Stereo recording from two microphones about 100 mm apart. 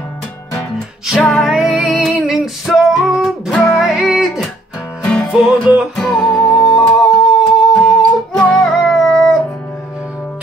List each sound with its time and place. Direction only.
1.0 s music: 5° right (ahead or behind)
5.0 s music: 15° left (ahead or behind)
5.5 s music: 15° right (ahead or behind)
6.2 s music: centre (ahead or behind)